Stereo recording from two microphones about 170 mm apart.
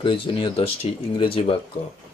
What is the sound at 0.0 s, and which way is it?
Speech, 30° left (ahead or behind).